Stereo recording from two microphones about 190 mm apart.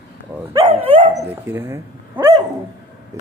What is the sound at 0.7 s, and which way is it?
Dog, 30° right (ahead or behind).